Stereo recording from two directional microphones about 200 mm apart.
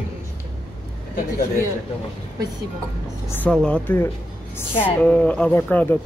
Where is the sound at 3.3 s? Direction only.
10° left (ahead or behind).